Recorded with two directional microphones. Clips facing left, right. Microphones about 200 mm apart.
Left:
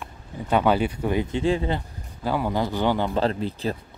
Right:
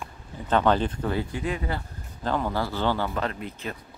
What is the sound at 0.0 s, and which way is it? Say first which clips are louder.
Speech: left 3 dB; 10° left (ahead or behind).